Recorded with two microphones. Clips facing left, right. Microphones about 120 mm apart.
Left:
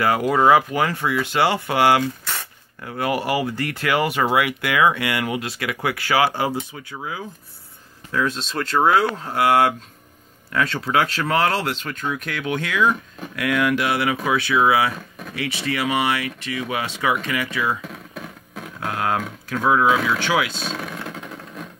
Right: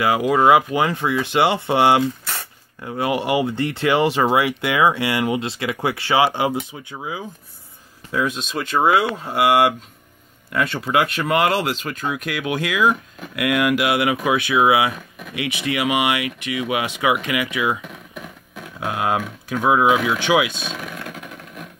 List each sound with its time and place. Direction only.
0.2 s speech: 5° right (ahead or behind)
18.8 s speech: 15° right (ahead or behind)
20.6 s vehicle: 25° left (ahead or behind)